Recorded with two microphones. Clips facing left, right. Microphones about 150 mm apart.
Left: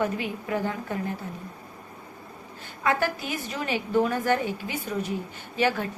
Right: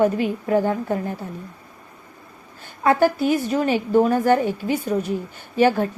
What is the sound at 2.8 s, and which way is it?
A woman's voice, 40° right (ahead or behind).